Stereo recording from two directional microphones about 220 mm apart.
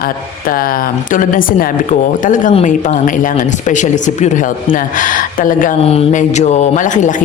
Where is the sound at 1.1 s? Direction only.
40° left (ahead or behind).